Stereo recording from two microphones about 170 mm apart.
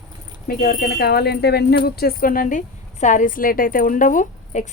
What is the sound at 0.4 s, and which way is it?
Speech, 60° left (ahead or behind).